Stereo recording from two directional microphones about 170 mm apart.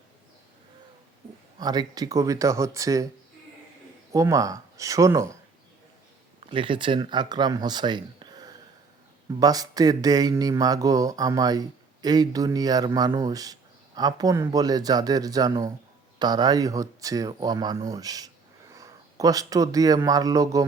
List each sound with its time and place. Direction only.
1.5 s speech: 25° right (ahead or behind)
4.1 s speech: 20° right (ahead or behind)
6.4 s speech: 30° right (ahead or behind)